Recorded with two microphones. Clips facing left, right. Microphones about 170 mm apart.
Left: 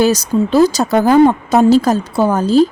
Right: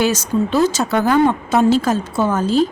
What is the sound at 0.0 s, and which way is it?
A woman's voice, 35° left (ahead or behind).